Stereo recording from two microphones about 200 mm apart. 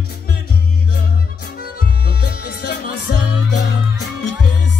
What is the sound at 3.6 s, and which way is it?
Music, 55° left (ahead or behind).